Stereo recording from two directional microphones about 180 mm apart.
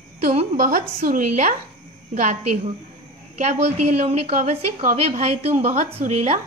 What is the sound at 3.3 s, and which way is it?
A woman's voice, 40° right (ahead or behind).